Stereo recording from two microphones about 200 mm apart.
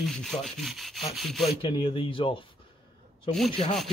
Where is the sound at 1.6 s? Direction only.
25° left (ahead or behind).